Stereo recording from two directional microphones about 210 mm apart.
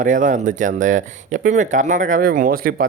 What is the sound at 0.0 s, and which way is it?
Speech, 40° right (ahead or behind).